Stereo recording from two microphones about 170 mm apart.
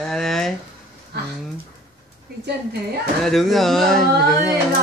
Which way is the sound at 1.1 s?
75° right (ahead or behind).